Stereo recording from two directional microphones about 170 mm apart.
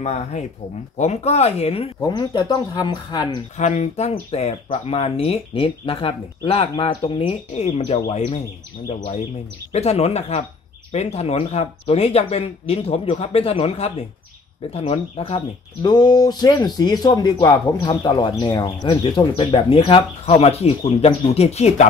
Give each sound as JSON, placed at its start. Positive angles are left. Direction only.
{"t": 0.0, "sound": "speech", "side_deg": 40}
{"t": 2.0, "sound": "speech", "side_deg": 25}
{"t": 3.5, "sound": "speech", "side_deg": 45}